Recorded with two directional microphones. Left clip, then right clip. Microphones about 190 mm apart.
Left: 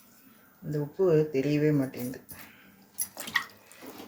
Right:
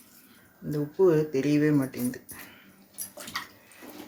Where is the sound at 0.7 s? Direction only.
20° right (ahead or behind).